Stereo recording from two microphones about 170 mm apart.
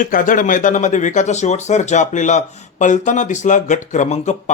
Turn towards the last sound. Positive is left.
turn(degrees=45)  # may be behind; listen again after turning